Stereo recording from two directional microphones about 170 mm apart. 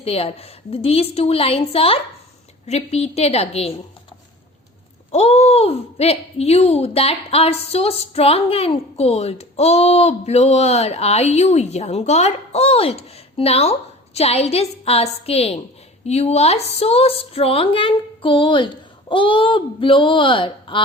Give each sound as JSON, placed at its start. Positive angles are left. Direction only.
{"t": 0.0, "sound": "speech", "side_deg": 35}
{"t": 5.1, "sound": "speech", "side_deg": 35}